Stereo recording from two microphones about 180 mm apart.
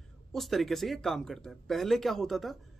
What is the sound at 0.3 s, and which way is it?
Speech, centre (ahead or behind).